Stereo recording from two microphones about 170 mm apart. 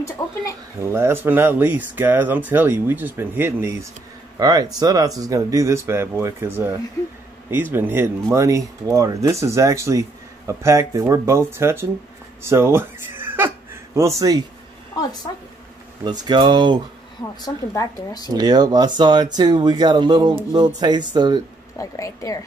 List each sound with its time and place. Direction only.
0.2 s speech: 20° left (ahead or behind)
0.7 s speech: 15° right (ahead or behind)
15.3 s speech: 25° left (ahead or behind)
16.0 s speech: 25° right (ahead or behind)
17.7 s speech: 20° left (ahead or behind)
18.3 s speech: 25° right (ahead or behind)
21.7 s speech: 20° left (ahead or behind)